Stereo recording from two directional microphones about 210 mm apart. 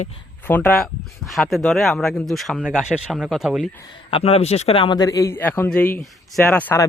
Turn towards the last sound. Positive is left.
turn(degrees=10)  # may be behind; listen again after turning